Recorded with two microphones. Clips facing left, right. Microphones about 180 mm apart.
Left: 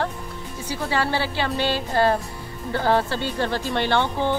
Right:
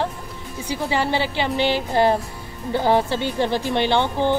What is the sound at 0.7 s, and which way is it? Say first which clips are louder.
Speech: right 2 dB; 15° right (ahead or behind).